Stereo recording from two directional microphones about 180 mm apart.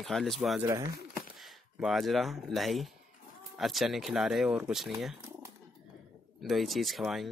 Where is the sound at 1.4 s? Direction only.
Centre (ahead or behind).